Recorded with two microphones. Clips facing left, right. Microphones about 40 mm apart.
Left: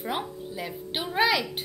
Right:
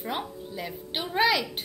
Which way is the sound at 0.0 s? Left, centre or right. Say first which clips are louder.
Left 1 dB; centre.